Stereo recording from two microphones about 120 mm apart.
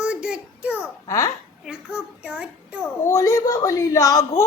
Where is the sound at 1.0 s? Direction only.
25° left (ahead or behind).